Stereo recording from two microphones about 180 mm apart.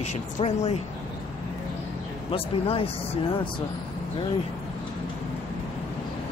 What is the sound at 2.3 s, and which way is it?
Speech, 30° left (ahead or behind).